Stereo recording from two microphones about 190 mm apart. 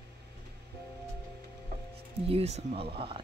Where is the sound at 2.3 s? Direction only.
35° right (ahead or behind).